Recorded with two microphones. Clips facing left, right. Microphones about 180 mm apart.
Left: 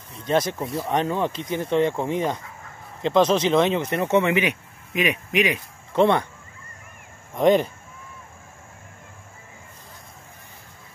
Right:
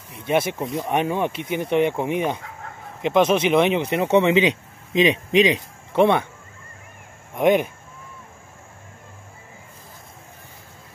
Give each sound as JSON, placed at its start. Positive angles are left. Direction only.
{"t": 0.3, "sound": "speech", "side_deg": -10}
{"t": 7.3, "sound": "speech", "side_deg": -10}